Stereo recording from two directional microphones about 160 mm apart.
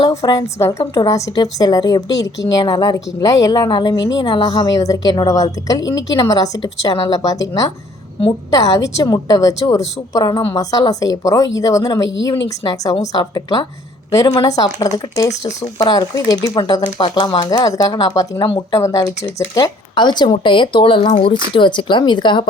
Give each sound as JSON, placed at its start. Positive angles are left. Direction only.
{"t": 0.0, "sound": "a woman's voice", "side_deg": 20}